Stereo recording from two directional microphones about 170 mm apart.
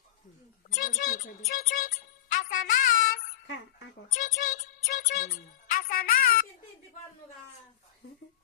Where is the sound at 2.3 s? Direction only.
50° left (ahead or behind).